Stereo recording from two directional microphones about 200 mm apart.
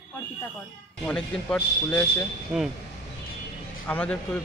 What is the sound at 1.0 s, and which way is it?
A man's voice, 5° left (ahead or behind).